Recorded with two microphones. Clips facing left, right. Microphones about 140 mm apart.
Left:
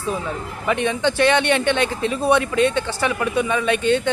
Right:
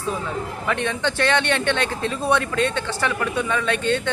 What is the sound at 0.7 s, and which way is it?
A man's voice, 10° left (ahead or behind).